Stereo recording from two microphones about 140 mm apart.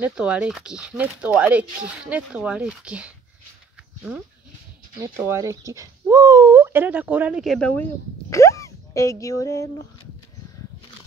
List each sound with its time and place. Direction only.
0.0 s speech: 10° right (ahead or behind)
5.0 s speech: 20° right (ahead or behind)
7.4 s speech: 5° left (ahead or behind)
7.8 s speech: 20° left (ahead or behind)